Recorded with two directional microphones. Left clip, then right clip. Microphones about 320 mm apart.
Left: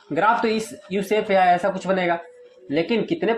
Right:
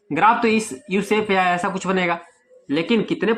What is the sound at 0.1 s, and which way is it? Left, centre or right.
Speech, right.